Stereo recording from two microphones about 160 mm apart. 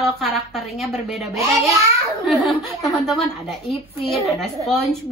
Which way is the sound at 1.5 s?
20° right (ahead or behind).